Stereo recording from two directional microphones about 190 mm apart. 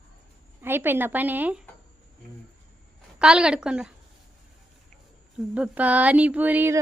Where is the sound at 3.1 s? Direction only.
5° right (ahead or behind).